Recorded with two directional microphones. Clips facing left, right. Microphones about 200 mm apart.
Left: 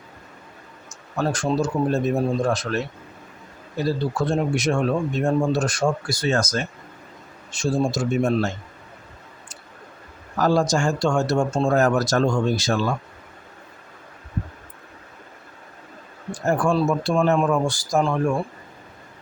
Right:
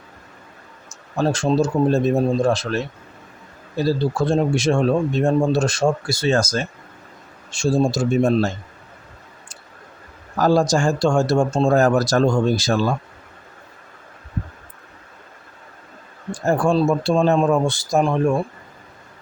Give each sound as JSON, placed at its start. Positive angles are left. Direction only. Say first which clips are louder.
{"t": 1.1, "sound": "speech", "louder": "right 4 dB", "side_deg": -25}
{"t": 10.3, "sound": "speech", "louder": "right 3 dB", "side_deg": -35}
{"t": 16.3, "sound": "speech", "louder": "right 3 dB", "side_deg": -30}